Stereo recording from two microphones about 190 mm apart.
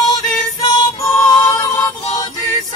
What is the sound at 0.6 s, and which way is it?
Music, 15° left (ahead or behind).